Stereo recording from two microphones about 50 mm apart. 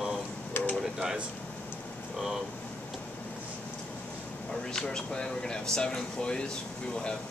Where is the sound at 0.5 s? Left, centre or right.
Left.